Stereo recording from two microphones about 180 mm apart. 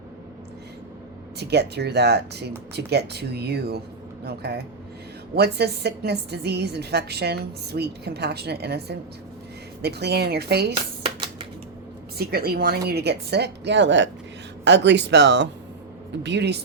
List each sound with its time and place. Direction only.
1.4 s a woman's voice: 65° right (ahead or behind)
11.0 s a sound: 30° right (ahead or behind)
12.1 s a woman's voice: 60° right (ahead or behind); by 14.1 s 90° right
14.6 s speech: 75° right (ahead or behind)